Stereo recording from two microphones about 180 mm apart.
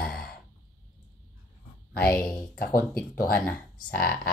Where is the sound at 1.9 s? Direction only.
10° left (ahead or behind).